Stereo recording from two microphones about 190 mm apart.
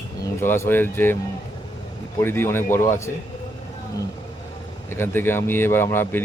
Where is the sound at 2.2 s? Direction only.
10° left (ahead or behind).